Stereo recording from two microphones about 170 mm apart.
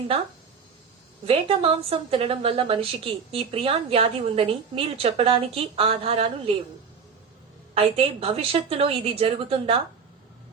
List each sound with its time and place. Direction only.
1.2 s a woman's voice: 35° right (ahead or behind)
7.7 s a woman's voice: 35° right (ahead or behind)